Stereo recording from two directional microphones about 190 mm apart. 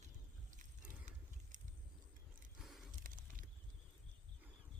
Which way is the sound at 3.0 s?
45° right (ahead or behind).